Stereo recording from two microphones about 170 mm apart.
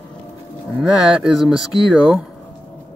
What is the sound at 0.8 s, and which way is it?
Speech, centre (ahead or behind).